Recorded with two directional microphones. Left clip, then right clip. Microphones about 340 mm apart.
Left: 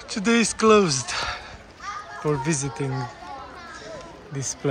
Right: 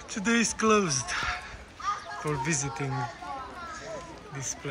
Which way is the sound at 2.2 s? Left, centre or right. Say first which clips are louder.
Left 6 dB; centre.